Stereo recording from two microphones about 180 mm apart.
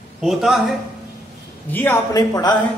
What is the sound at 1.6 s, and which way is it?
Speech, 10° left (ahead or behind).